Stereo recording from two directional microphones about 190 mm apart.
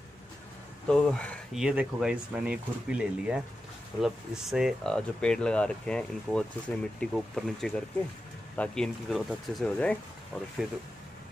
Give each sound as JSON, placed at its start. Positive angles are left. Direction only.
{"t": 0.8, "sound": "speech", "side_deg": 5}